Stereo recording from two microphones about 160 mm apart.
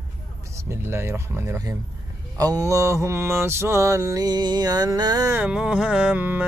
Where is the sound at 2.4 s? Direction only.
20° right (ahead or behind).